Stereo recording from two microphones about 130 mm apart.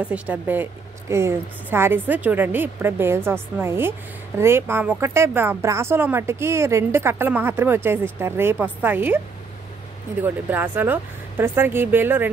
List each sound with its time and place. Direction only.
0.0 s speech: 10° right (ahead or behind)
10.2 s speech: 15° right (ahead or behind)